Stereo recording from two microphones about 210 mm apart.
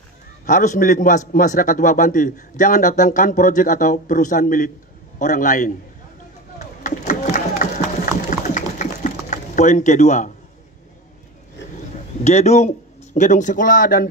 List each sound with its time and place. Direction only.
0.5 s a man's voice: 40° left (ahead or behind)
6.8 s a sound: 40° left (ahead or behind)
12.2 s a man's voice: 30° left (ahead or behind)